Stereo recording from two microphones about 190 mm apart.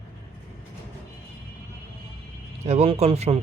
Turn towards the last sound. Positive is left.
turn(degrees=-35)  # may be behind; listen again after turning